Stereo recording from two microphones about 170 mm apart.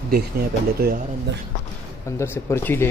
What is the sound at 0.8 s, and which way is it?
Speech, 65° right (ahead or behind).